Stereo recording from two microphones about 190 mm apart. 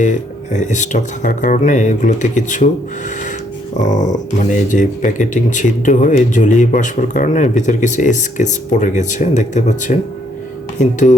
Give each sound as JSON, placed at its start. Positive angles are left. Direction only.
{"t": 0.0, "sound": "speech", "side_deg": 40}
{"t": 3.8, "sound": "speech", "side_deg": 40}